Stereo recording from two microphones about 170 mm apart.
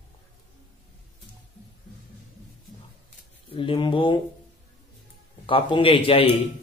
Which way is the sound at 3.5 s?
30° left (ahead or behind).